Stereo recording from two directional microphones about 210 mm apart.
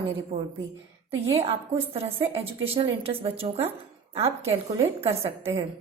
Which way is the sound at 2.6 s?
25° right (ahead or behind).